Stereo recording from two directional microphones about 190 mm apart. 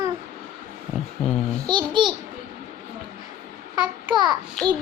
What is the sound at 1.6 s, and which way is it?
Speech, 25° right (ahead or behind).